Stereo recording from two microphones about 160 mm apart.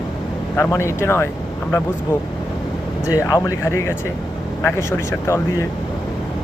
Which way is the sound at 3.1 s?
20° left (ahead or behind).